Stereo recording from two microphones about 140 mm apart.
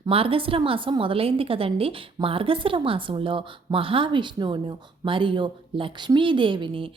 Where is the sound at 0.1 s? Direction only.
40° right (ahead or behind).